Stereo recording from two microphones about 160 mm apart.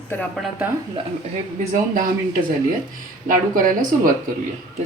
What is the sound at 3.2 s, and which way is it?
Speech, 55° right (ahead or behind).